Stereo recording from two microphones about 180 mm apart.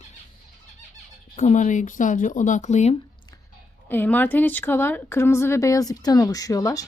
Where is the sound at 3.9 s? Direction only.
10° left (ahead or behind).